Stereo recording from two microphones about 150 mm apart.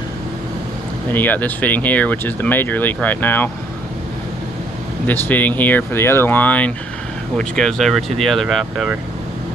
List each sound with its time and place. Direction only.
1.1 s speech: 10° left (ahead or behind)
5.0 s speech: 10° left (ahead or behind)